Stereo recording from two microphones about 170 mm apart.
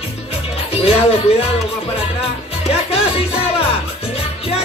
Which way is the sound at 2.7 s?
35° left (ahead or behind).